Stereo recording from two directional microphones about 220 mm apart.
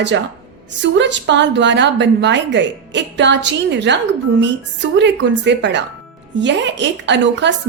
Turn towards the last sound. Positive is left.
turn(degrees=-55)  # may be behind; listen again after turning